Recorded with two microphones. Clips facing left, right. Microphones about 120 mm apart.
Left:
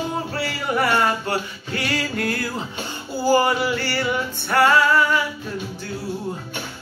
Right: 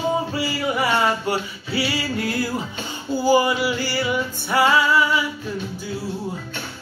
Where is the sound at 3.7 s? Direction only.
55° left (ahead or behind).